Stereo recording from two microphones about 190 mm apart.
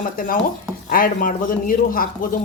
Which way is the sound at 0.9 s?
45° left (ahead or behind).